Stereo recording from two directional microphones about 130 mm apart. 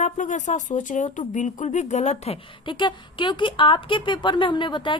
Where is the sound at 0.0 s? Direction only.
70° left (ahead or behind); by 2.4 s 55° left (ahead or behind).